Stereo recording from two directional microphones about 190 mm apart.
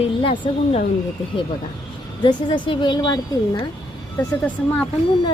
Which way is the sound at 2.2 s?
25° left (ahead or behind).